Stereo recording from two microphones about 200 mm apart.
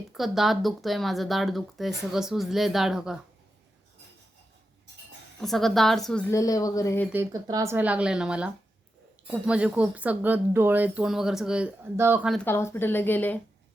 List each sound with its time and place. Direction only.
0.1 s speech: centre (ahead or behind)
5.4 s speech: centre (ahead or behind)
6.3 s a woman's voice: 15° left (ahead or behind)
7.1 s speech: 15° right (ahead or behind)
12.3 s a woman's voice: 10° left (ahead or behind)